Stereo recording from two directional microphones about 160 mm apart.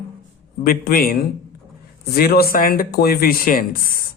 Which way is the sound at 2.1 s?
70° left (ahead or behind).